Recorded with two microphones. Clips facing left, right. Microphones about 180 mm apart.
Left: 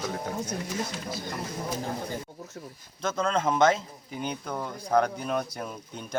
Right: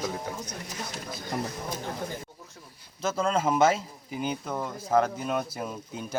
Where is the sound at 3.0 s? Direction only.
5° right (ahead or behind).